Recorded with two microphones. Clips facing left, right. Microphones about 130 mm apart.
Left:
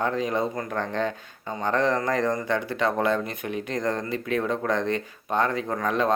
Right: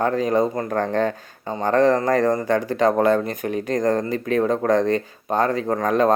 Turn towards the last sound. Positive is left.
turn(degrees=-45)  # may be behind; listen again after turning